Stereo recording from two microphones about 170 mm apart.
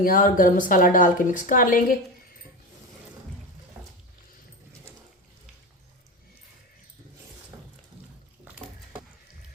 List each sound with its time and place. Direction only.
0.0 s a woman's voice: 55° left (ahead or behind)